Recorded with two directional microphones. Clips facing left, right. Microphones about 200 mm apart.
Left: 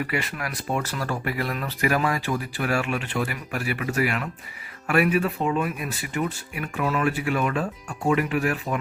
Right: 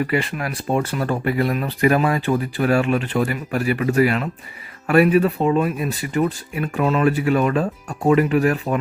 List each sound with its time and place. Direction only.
0.1 s speech: 30° right (ahead or behind)